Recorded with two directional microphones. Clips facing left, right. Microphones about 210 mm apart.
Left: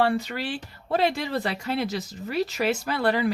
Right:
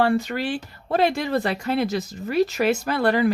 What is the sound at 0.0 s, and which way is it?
Speech, 45° right (ahead or behind).